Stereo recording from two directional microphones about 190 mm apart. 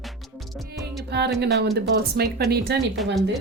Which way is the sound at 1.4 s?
60° right (ahead or behind).